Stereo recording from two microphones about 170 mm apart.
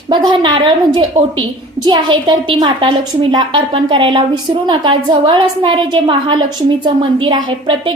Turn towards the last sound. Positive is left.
turn(degrees=-25)  # may be behind; listen again after turning